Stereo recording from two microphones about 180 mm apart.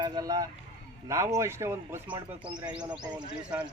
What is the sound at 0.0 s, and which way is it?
A man's voice, 20° right (ahead or behind).